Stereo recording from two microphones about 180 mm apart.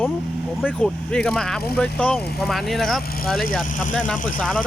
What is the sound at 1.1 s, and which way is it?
Speech, 5° left (ahead or behind).